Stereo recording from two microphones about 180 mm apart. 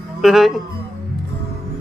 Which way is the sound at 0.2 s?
Centre (ahead or behind).